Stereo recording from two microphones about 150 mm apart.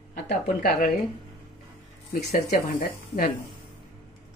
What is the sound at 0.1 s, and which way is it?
Speech, 65° left (ahead or behind).